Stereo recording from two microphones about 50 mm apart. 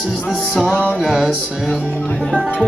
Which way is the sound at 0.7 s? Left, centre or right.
Left.